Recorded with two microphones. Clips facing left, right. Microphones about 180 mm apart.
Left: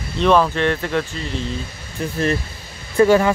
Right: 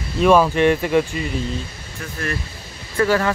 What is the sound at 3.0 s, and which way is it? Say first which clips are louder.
Speech: left 5 dB; 20° left (ahead or behind).